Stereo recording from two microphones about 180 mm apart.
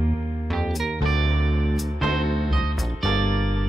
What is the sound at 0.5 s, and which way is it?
Music, centre (ahead or behind).